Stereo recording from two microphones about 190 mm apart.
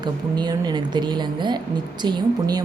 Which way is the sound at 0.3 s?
20° right (ahead or behind).